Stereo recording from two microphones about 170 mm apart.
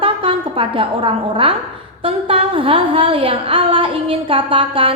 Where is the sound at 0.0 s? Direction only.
30° right (ahead or behind).